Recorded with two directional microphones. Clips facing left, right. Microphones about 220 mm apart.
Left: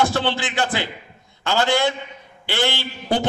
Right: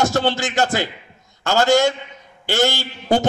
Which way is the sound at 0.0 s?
45° right (ahead or behind).